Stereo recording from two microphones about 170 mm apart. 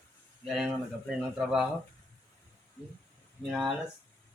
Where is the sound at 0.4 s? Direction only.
Centre (ahead or behind).